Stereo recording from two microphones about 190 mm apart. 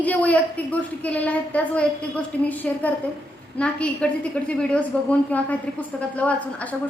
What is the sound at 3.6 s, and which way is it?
A woman's voice, 5° left (ahead or behind).